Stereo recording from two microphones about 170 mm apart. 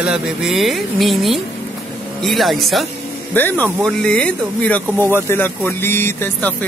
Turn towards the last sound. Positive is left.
turn(degrees=10)  # may be behind; listen again after turning